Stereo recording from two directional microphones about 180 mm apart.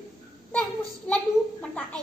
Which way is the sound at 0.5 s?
10° left (ahead or behind).